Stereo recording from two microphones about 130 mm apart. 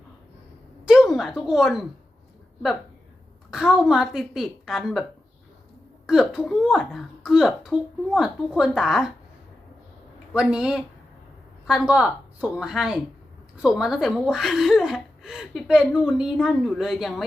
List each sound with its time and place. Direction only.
0.9 s a woman's voice: centre (ahead or behind)
3.5 s speech: 5° right (ahead or behind)
6.1 s speech: 5° right (ahead or behind)
10.5 s speech: 5° right (ahead or behind)